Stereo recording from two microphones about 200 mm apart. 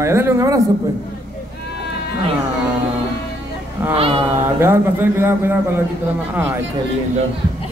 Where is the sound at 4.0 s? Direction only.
30° right (ahead or behind).